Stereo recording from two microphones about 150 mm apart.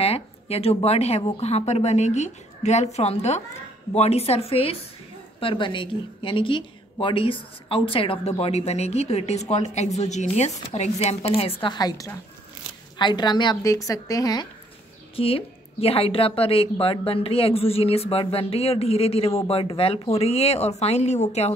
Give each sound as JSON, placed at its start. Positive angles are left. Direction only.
{"t": 0.0, "sound": "a sound", "side_deg": 40}
{"t": 0.8, "sound": "a woman's voice", "side_deg": 45}
{"t": 15.1, "sound": "a woman's voice", "side_deg": 40}